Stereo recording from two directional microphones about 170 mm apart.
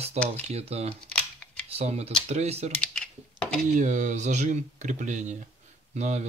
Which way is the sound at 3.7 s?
45° right (ahead or behind).